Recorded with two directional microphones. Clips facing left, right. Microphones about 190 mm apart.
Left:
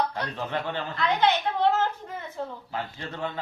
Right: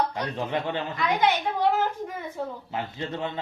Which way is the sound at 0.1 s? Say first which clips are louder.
Right 2 dB; 15° right (ahead or behind).